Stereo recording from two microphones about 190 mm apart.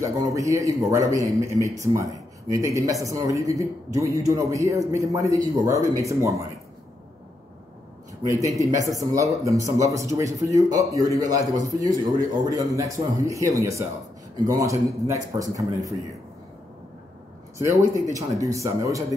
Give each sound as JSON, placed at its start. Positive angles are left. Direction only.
{"t": 0.0, "sound": "speech", "side_deg": -15}
{"t": 8.2, "sound": "a man's voice", "side_deg": -15}
{"t": 17.6, "sound": "speech", "side_deg": -15}